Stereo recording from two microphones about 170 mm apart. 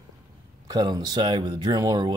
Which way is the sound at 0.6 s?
25° right (ahead or behind).